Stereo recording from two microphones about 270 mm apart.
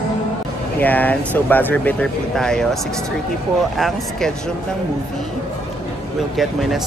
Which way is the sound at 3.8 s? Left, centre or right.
Centre.